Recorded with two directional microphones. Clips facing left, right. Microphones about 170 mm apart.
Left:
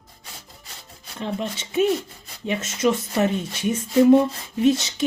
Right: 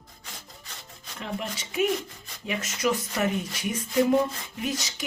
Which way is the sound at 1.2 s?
30° left (ahead or behind).